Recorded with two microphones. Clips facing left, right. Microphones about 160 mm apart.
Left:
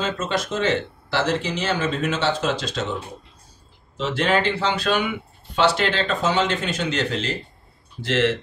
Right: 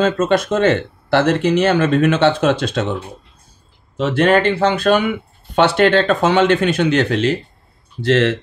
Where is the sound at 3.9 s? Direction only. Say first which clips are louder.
Right 7 dB; 55° right (ahead or behind).